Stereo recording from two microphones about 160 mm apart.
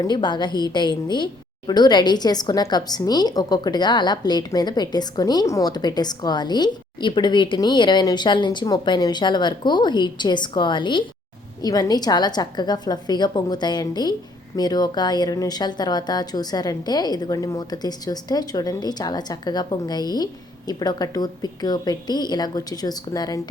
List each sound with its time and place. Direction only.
0.0 s a woman's voice: 30° left (ahead or behind)